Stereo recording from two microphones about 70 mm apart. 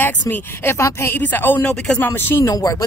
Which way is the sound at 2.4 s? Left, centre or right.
Left.